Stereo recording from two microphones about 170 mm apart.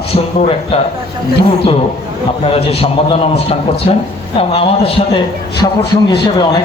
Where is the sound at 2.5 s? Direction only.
35° left (ahead or behind).